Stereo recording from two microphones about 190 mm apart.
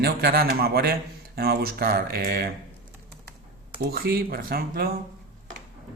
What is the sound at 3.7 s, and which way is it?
Speech, 50° right (ahead or behind).